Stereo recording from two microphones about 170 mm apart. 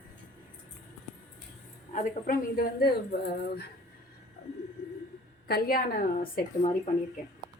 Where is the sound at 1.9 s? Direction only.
45° left (ahead or behind).